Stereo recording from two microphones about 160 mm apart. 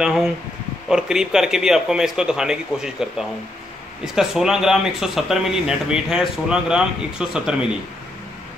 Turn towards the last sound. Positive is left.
turn(degrees=-5)  # may be behind; listen again after turning